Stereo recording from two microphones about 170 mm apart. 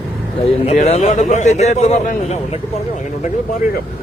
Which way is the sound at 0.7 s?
40° left (ahead or behind).